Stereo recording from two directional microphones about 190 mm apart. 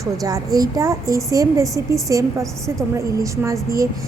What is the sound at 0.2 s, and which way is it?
A woman's voice, 20° right (ahead or behind).